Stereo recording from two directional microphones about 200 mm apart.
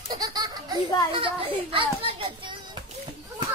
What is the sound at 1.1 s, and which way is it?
Children playing, 25° right (ahead or behind).